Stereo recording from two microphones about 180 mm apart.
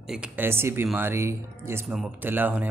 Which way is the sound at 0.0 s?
5° right (ahead or behind).